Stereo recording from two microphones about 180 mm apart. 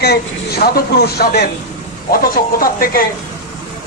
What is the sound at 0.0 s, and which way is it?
A man's voice, 60° left (ahead or behind).